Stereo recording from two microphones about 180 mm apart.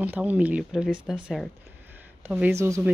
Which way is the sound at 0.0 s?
10° right (ahead or behind).